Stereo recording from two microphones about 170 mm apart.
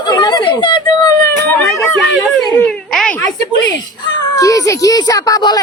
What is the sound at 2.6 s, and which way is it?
Speech, 5° left (ahead or behind).